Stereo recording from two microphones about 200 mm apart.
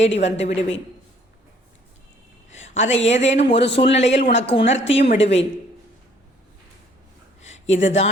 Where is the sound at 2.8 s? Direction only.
35° left (ahead or behind).